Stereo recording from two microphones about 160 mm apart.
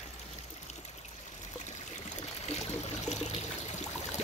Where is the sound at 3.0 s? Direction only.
45° left (ahead or behind).